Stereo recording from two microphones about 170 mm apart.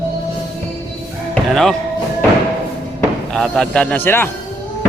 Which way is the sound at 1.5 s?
Centre (ahead or behind).